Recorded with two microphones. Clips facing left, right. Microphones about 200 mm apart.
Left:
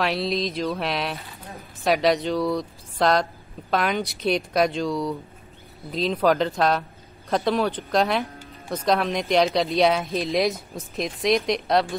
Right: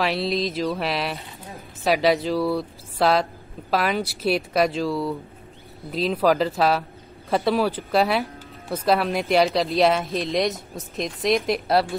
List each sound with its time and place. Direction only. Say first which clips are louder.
0.0 s speech: right 1 dB; centre (ahead or behind)